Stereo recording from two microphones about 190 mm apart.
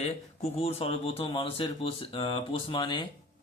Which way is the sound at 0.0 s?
35° left (ahead or behind).